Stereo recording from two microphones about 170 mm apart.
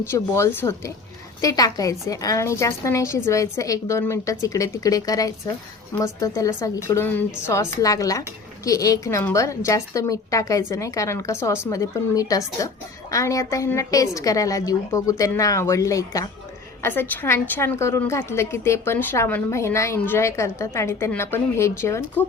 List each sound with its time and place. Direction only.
0.0 s a woman's voice: 15° left (ahead or behind)